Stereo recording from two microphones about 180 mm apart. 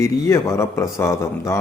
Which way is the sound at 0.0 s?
15° left (ahead or behind).